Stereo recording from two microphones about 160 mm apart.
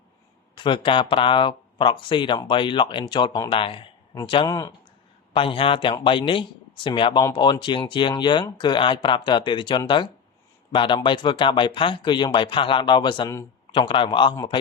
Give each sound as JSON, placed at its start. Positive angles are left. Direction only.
{"t": 0.5, "sound": "speech", "side_deg": 30}
{"t": 5.3, "sound": "a man's voice", "side_deg": 35}